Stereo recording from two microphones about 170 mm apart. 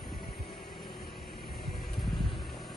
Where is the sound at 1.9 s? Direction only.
Centre (ahead or behind).